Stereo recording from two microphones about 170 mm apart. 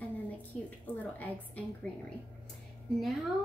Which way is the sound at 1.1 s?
10° left (ahead or behind).